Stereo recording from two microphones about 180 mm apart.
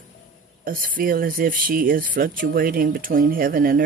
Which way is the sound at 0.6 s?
50° right (ahead or behind).